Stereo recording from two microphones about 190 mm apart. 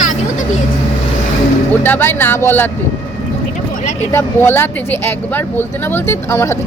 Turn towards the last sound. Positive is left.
turn(degrees=15)  # may be behind; listen again after turning